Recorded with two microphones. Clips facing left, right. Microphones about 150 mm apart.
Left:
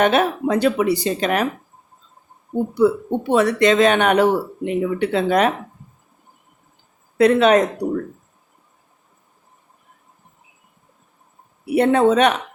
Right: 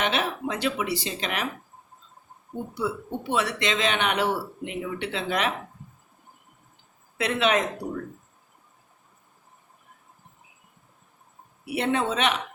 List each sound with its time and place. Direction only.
0.0 s speech: 50° left (ahead or behind)
2.7 s speech: 50° left (ahead or behind)
7.2 s speech: 45° left (ahead or behind)
11.7 s speech: 50° left (ahead or behind)